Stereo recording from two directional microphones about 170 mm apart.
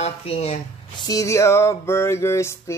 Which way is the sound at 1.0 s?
20° left (ahead or behind).